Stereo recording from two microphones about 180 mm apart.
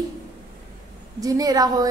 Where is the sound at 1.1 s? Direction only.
20° right (ahead or behind).